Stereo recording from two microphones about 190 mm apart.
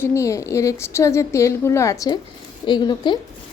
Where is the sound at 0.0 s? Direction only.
15° left (ahead or behind).